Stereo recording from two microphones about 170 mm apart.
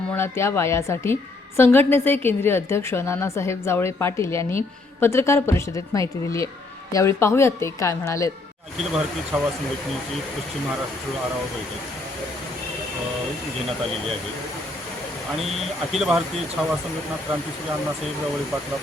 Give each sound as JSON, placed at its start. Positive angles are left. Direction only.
{"t": 0.1, "sound": "a woman's voice", "side_deg": 15}
{"t": 15.9, "sound": "speech", "side_deg": 0}